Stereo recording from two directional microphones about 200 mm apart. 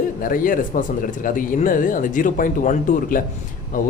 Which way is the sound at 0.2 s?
45° left (ahead or behind).